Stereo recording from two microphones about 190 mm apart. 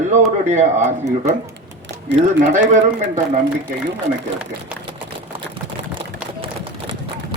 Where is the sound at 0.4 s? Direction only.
35° right (ahead or behind).